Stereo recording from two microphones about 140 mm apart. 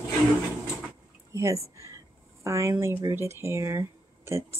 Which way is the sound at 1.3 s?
20° right (ahead or behind).